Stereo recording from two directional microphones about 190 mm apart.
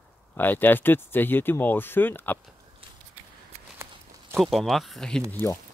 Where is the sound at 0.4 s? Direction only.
10° left (ahead or behind).